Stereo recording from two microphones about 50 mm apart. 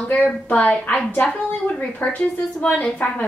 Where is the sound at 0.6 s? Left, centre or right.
Left.